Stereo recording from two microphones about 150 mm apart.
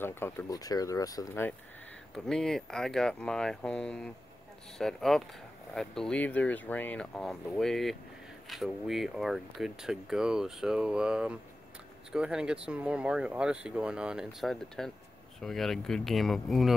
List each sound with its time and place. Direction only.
0.0 s speech: 15° left (ahead or behind)
2.1 s speech: 5° left (ahead or behind)